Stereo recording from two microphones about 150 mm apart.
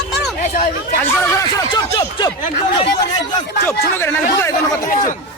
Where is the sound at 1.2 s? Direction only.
20° left (ahead or behind).